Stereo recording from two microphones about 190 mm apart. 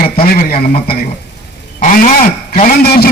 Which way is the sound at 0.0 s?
50° left (ahead or behind).